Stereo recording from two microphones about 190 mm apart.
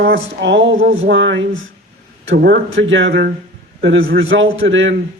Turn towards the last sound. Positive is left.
turn(degrees=-85)